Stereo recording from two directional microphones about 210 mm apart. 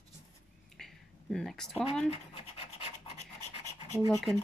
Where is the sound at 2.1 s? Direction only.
30° left (ahead or behind).